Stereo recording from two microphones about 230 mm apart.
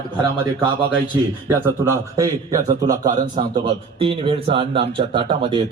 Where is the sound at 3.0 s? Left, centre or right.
Right.